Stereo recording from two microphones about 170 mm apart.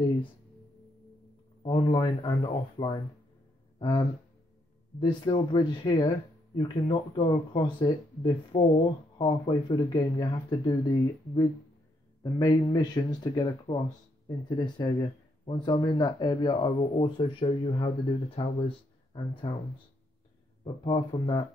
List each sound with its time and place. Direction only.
1.6 s speech: 25° left (ahead or behind)
5.0 s speech: 25° left (ahead or behind)
20.6 s speech: 25° left (ahead or behind)